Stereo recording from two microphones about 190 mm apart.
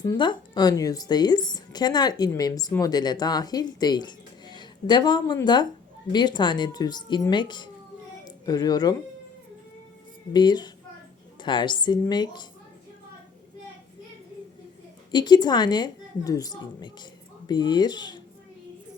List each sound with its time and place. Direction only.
0.0 s a woman's voice: 20° left (ahead or behind)
10.3 s a woman's voice: 20° left (ahead or behind)
15.1 s a woman's voice: 20° left (ahead or behind)